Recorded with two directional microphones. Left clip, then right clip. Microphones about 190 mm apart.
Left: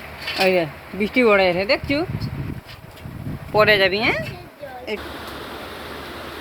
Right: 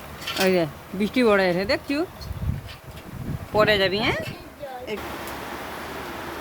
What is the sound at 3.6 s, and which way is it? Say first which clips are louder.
Speech: left 4 dB; 15° left (ahead or behind).